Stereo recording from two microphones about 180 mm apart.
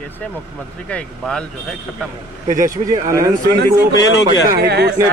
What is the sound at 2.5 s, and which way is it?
Speech, 45° right (ahead or behind).